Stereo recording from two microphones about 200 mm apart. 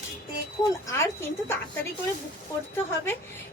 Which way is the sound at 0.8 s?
15° left (ahead or behind).